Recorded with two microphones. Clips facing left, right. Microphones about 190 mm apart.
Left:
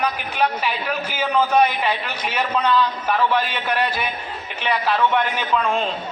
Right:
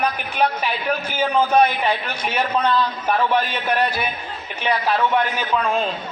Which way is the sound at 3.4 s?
45° right (ahead or behind).